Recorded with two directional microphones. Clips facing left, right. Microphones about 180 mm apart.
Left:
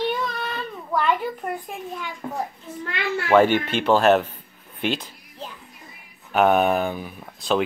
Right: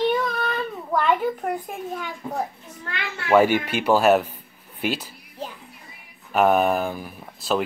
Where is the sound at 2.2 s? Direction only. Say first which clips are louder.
Even; 65° left (ahead or behind).